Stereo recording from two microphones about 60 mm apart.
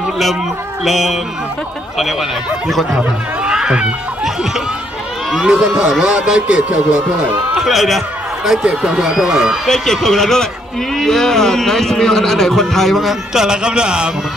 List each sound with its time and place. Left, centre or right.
0.8 s a man's voice: centre
3.0 s speech: centre
7.5 s a man's voice: centre
9.7 s a man's voice: centre